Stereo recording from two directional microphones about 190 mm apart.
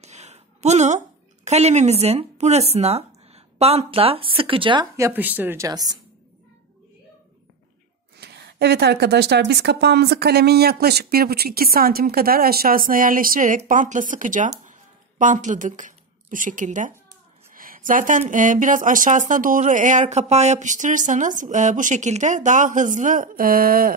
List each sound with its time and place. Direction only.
0.0 s a woman's voice: 35° right (ahead or behind); by 5.9 s 20° right (ahead or behind)
8.2 s speech: 60° right (ahead or behind); by 14.5 s 45° right (ahead or behind)
14.7 s a sound: 40° right (ahead or behind)
17.6 s speech: 45° right (ahead or behind)